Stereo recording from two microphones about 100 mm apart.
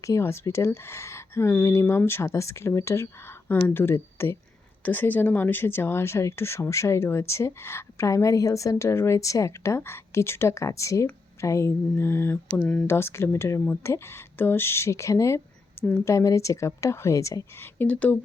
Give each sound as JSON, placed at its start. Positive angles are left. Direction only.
{"t": 0.0, "sound": "speech", "side_deg": 30}
{"t": 12.5, "sound": "speech", "side_deg": 5}
{"t": 12.9, "sound": "a woman's voice", "side_deg": 25}
{"t": 17.8, "sound": "speech", "side_deg": 15}